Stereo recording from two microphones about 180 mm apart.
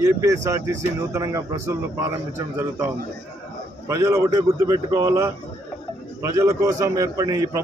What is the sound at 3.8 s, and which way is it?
A man's voice, 15° right (ahead or behind).